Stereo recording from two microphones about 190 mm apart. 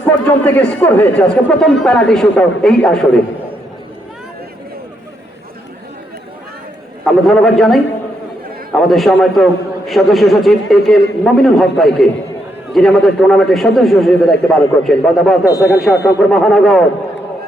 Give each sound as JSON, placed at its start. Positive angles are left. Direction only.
{"t": 0.0, "sound": "a man's voice", "side_deg": 10}
{"t": 7.0, "sound": "a man's voice", "side_deg": 0}
{"t": 15.4, "sound": "speech", "side_deg": 15}
{"t": 16.3, "sound": "a man's voice", "side_deg": 0}